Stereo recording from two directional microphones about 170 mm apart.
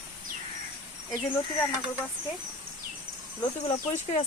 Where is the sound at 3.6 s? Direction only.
40° left (ahead or behind).